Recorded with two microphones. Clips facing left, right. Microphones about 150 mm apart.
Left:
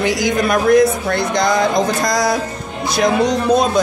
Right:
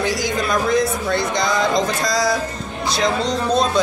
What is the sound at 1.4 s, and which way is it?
A woman's voice, 15° left (ahead or behind).